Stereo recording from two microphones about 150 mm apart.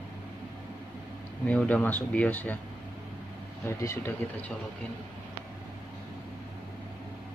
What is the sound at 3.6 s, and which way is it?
Speech, 20° left (ahead or behind).